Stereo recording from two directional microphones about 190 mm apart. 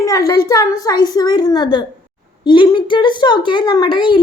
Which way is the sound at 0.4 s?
15° left (ahead or behind).